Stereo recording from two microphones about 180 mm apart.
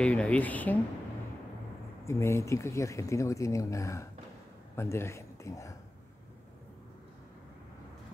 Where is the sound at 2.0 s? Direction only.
15° left (ahead or behind).